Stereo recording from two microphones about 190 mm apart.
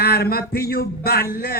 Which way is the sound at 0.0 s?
55° left (ahead or behind).